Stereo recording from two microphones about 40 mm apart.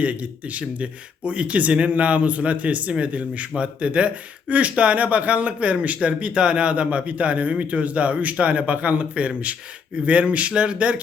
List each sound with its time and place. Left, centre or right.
0.0 s speech: right